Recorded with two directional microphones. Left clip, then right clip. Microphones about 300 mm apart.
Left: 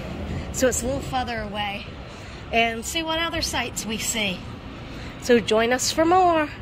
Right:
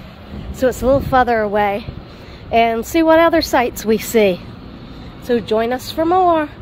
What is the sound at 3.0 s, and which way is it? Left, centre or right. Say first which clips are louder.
Speech: right 16 dB; right.